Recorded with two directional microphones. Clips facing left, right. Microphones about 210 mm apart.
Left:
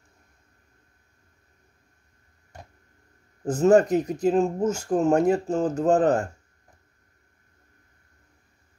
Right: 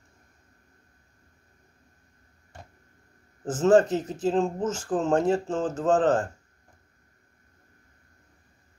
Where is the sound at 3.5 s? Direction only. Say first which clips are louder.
Left 2 dB; 10° left (ahead or behind).